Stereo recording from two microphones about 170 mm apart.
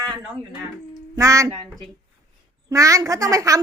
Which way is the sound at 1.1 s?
20° right (ahead or behind).